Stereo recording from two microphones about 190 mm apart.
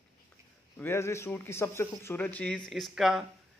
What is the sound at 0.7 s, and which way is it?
Speech, 10° left (ahead or behind).